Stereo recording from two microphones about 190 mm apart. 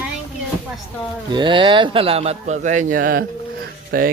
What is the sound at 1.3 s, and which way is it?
A man's voice, 25° right (ahead or behind).